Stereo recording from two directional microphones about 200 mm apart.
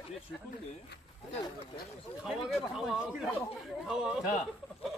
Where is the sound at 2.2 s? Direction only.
Centre (ahead or behind).